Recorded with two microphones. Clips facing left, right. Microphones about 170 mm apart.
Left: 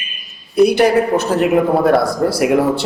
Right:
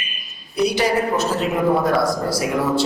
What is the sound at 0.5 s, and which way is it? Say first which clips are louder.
A woman's voice: left 7 dB; 55° left (ahead or behind).